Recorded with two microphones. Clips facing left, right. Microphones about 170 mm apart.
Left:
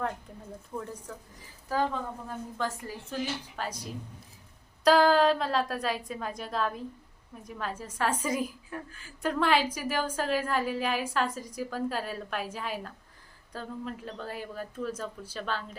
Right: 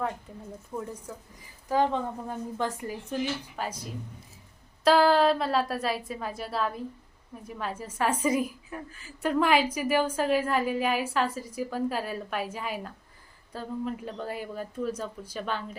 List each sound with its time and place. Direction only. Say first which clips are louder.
0.3 s a woman's voice: right 1 dB; 5° right (ahead or behind)
1.7 s a woman's voice: right 4 dB; 20° right (ahead or behind)
4.8 s a woman's voice: right 1 dB; 5° right (ahead or behind)